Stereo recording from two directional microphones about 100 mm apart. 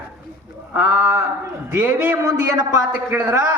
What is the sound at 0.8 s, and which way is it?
A man's voice, 20° right (ahead or behind).